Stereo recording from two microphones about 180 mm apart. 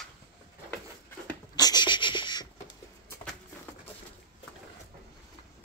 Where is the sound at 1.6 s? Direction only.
25° left (ahead or behind).